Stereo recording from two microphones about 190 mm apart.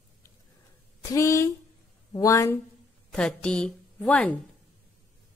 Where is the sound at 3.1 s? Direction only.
5° left (ahead or behind).